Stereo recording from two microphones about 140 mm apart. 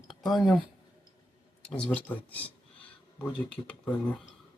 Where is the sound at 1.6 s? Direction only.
5° left (ahead or behind).